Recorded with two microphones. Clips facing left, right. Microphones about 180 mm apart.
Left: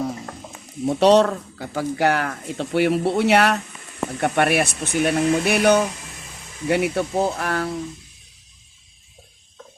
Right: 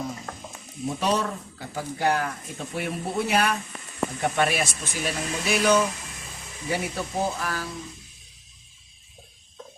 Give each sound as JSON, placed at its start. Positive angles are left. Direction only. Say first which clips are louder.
{"t": 0.9, "sound": "speech", "louder": "left 11 dB", "side_deg": 75}